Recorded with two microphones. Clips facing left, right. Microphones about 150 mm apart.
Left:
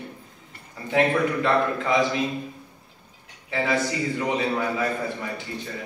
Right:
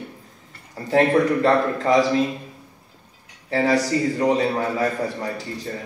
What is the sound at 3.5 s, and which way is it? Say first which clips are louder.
A man's voice: right 5 dB; 40° right (ahead or behind).